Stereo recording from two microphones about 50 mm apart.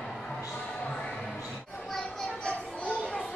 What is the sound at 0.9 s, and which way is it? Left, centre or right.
Music, centre.